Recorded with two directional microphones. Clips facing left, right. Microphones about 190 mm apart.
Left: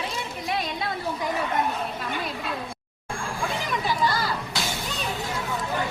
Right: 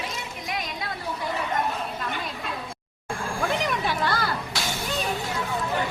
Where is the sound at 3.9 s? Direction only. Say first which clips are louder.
Left 1 dB; 60° right (ahead or behind).